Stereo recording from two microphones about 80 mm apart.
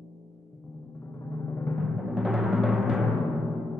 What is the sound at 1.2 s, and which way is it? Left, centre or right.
Music, left.